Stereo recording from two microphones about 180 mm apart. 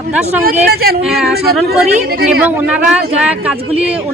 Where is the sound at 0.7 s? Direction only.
60° right (ahead or behind).